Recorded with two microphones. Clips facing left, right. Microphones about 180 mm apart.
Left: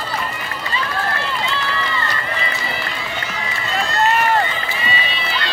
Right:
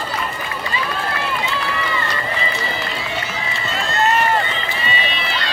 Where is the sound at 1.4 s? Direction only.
15° right (ahead or behind).